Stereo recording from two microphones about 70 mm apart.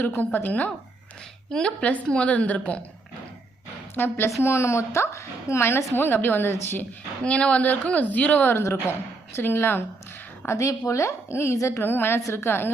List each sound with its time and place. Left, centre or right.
0.0 s a woman's voice: left
1.5 s a woman's voice: centre
3.9 s a woman's voice: left
4.4 s a woman's voice: left
7.3 s a woman's voice: centre
8.5 s a woman's voice: left
10.7 s speech: left
11.8 s a woman's voice: left